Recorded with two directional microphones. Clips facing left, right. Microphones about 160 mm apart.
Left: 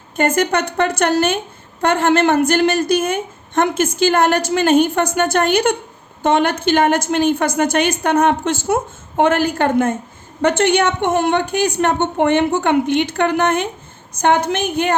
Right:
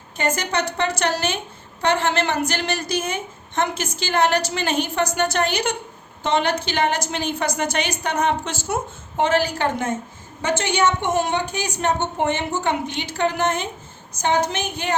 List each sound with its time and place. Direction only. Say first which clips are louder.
0.2 s a woman's voice: left 6 dB; 55° left (ahead or behind)